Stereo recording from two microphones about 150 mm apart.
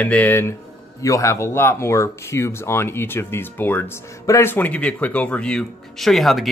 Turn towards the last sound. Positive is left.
turn(degrees=0)  # may be behind; listen again after turning